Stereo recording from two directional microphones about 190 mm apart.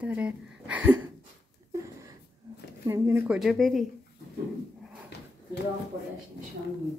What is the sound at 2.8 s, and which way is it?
Speech, 15° right (ahead or behind).